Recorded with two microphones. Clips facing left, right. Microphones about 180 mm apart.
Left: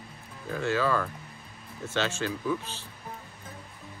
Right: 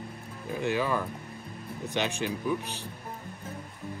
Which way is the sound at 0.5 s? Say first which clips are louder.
Left 1 dB; 15° right (ahead or behind).